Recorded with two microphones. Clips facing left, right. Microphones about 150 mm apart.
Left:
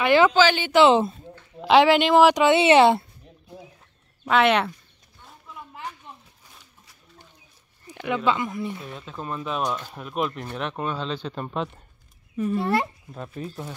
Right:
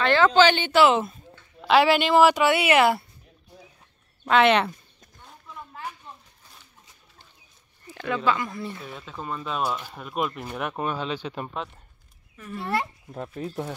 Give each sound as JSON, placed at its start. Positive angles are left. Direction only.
{"t": 0.0, "sound": "speech", "side_deg": 15}
{"t": 0.7, "sound": "speech", "side_deg": 30}
{"t": 4.2, "sound": "speech", "side_deg": 5}
{"t": 7.8, "sound": "speech", "side_deg": 15}
{"t": 8.8, "sound": "speech", "side_deg": 0}
{"t": 12.4, "sound": "speech", "side_deg": 25}
{"t": 13.4, "sound": "speech", "side_deg": -25}